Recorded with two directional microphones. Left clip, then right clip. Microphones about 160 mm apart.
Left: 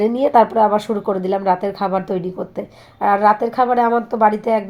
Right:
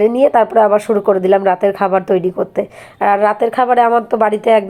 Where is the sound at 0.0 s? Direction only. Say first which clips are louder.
Right 3 dB; 25° right (ahead or behind).